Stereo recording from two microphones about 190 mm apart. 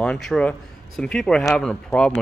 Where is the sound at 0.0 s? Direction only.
5° left (ahead or behind).